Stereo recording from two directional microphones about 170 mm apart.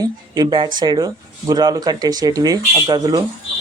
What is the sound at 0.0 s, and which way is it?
A man's voice, 25° right (ahead or behind).